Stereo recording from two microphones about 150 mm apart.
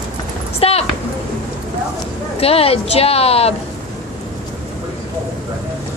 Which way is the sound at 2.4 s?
40° left (ahead or behind).